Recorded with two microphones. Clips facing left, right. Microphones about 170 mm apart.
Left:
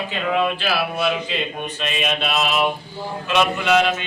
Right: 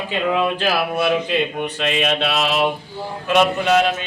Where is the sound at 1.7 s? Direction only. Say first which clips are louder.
Right 4 dB; 80° right.